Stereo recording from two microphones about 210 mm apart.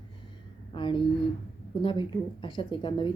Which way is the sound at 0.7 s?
25° left (ahead or behind).